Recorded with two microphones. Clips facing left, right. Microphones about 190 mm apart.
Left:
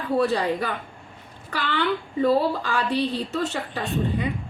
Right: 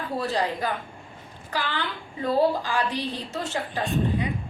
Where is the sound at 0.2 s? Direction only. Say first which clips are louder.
Left 3 dB; 65° left (ahead or behind).